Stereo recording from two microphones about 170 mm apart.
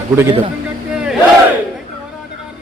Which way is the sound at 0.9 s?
5° right (ahead or behind).